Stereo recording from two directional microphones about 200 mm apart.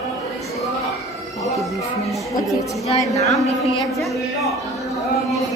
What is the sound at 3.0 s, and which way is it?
Speech, 15° left (ahead or behind).